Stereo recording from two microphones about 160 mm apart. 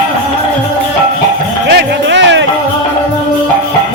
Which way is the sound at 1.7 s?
90° right.